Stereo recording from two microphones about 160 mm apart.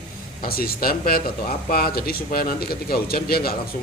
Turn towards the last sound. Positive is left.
turn(degrees=70)  # may be behind; listen again after turning